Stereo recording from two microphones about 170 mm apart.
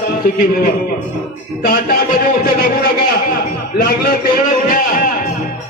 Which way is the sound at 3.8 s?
65° left (ahead or behind).